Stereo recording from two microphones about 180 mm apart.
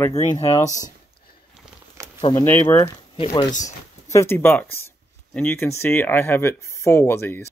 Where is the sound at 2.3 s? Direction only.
15° left (ahead or behind).